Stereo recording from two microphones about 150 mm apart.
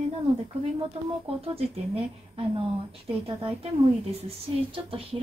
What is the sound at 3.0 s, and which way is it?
Speech, 40° right (ahead or behind).